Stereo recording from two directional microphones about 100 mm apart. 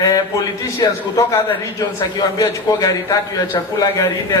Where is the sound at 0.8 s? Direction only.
30° left (ahead or behind).